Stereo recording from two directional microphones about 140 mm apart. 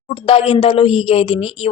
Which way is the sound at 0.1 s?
45° left (ahead or behind).